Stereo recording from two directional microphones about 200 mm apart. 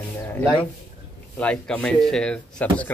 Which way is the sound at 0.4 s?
10° left (ahead or behind).